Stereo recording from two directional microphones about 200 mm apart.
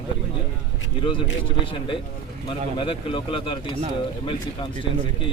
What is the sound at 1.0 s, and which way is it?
A man's voice, 25° left (ahead or behind).